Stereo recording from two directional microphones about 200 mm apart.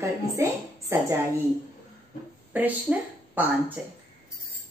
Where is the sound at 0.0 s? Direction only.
15° right (ahead or behind).